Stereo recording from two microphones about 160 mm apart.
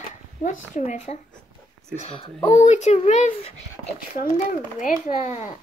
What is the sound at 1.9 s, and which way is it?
Speech, 40° left (ahead or behind).